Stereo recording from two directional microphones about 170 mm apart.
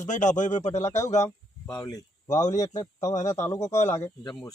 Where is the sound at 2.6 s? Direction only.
20° left (ahead or behind).